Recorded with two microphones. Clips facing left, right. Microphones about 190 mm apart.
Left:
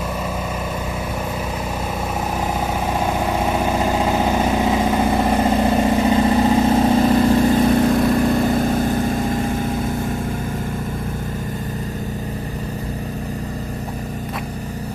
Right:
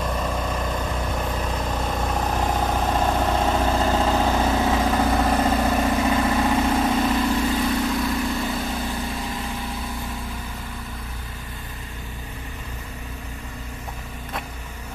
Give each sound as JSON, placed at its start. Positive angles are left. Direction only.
{"t": 2.4, "sound": "vehicle", "side_deg": 10}